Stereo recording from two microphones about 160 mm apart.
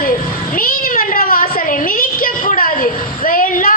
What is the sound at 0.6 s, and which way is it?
Cat, 65° left (ahead or behind).